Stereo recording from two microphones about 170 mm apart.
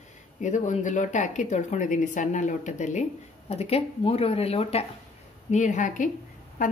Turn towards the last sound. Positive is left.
turn(degrees=50)  # may be behind; listen again after turning